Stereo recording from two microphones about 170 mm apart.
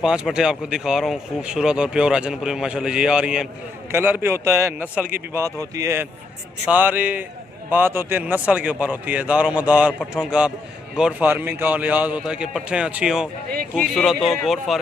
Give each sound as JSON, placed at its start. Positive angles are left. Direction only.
{"t": 0.0, "sound": "a man's voice", "side_deg": -5}